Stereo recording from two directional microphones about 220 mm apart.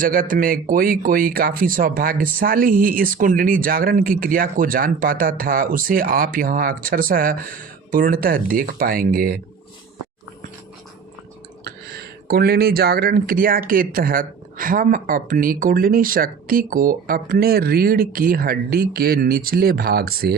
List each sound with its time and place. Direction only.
0.0 s speech: 40° right (ahead or behind)
11.6 s speech: 45° right (ahead or behind)